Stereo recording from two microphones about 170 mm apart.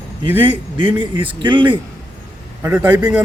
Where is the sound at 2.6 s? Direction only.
10° right (ahead or behind).